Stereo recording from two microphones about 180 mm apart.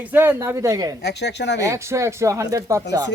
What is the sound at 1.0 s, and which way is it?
Speech, 70° left (ahead or behind).